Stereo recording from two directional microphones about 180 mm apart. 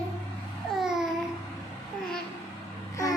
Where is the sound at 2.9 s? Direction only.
20° left (ahead or behind).